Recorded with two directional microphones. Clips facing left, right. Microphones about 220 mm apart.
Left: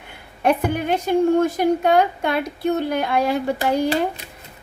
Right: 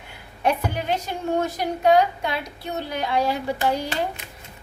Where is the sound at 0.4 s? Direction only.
55° left (ahead or behind).